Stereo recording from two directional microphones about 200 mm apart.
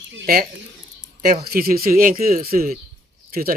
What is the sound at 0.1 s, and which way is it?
Speech, 55° right (ahead or behind).